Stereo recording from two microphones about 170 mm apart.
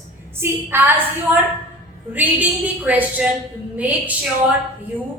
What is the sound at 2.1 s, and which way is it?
Speech, 10° right (ahead or behind).